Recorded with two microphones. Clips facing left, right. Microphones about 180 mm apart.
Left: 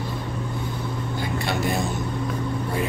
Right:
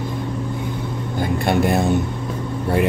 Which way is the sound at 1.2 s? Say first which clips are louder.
Right 8 dB; 55° right (ahead or behind).